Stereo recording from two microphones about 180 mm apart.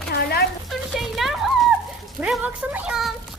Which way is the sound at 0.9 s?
Centre (ahead or behind).